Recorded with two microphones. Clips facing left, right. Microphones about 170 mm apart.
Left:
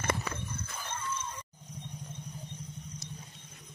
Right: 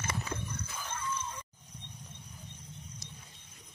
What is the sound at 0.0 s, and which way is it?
Horse, 60° left (ahead or behind).